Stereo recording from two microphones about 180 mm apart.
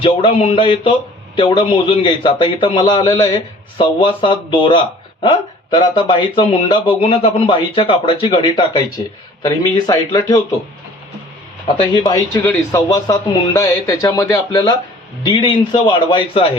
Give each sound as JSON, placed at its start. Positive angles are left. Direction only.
{"t": 0.0, "sound": "speech", "side_deg": 30}
{"t": 11.8, "sound": "speech", "side_deg": 25}